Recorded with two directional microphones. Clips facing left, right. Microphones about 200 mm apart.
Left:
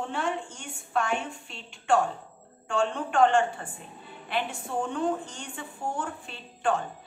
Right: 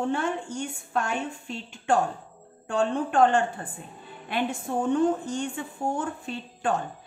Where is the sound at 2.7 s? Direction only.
40° right (ahead or behind).